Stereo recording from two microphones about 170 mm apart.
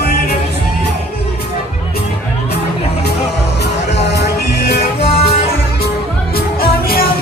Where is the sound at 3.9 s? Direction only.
80° left.